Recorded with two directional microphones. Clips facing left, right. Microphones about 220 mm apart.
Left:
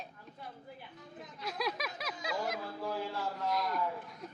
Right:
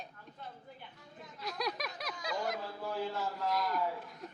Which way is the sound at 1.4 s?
Centre (ahead or behind).